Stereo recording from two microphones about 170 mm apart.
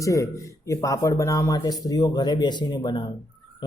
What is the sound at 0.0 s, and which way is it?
Speech, 20° left (ahead or behind).